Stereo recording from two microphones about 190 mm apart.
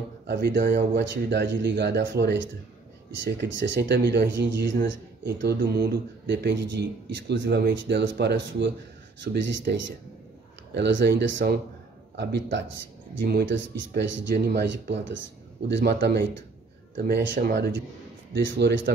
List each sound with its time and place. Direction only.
0.3 s speech: 65° right (ahead or behind)